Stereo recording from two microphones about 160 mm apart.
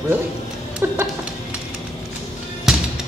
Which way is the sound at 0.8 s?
15° right (ahead or behind).